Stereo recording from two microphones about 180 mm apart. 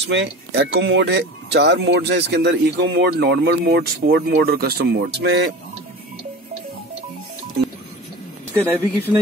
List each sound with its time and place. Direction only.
0.1 s speech: 75° right (ahead or behind)
8.5 s speech: 15° right (ahead or behind)